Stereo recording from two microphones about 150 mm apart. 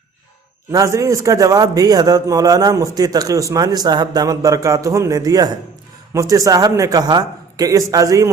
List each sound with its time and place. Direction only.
0.7 s a man's voice: 20° right (ahead or behind)